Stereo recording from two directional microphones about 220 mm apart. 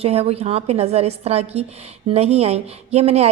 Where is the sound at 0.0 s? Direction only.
25° right (ahead or behind).